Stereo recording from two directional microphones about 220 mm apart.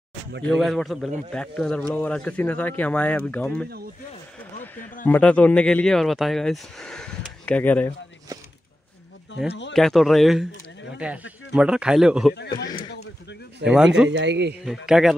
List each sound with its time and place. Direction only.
0.5 s speech: centre (ahead or behind)
5.0 s speech: 5° left (ahead or behind)
9.5 s speech: 55° left (ahead or behind)
9.8 s speech: centre (ahead or behind)
11.5 s speech: 5° right (ahead or behind)
12.5 s speech: 20° left (ahead or behind)
13.7 s speech: 5° right (ahead or behind)
14.0 s speech: 55° right (ahead or behind)
14.6 s speech: centre (ahead or behind)